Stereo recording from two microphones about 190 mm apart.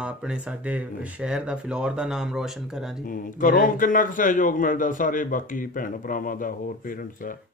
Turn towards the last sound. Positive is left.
turn(degrees=45)  # may be behind; listen again after turning